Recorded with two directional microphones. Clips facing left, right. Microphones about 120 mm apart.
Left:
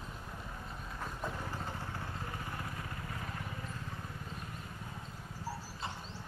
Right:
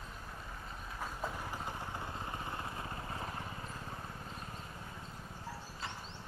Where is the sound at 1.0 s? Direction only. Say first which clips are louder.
Even; 10° right (ahead or behind); by 3.3 s 30° right (ahead or behind).